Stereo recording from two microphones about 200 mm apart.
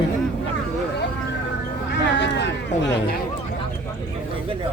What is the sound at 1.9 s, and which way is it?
Speech, 60° left (ahead or behind).